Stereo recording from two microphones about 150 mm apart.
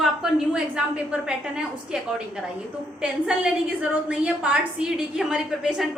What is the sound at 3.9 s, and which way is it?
A woman's voice, 10° right (ahead or behind).